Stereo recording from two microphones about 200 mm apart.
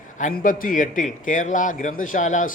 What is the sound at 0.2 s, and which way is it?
A man's voice, 40° left (ahead or behind).